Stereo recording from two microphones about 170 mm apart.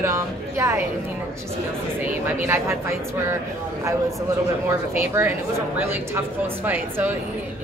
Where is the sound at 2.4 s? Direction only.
15° right (ahead or behind).